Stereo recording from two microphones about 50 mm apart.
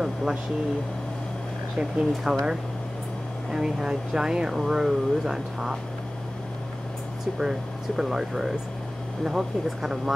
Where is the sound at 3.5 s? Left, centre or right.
Centre.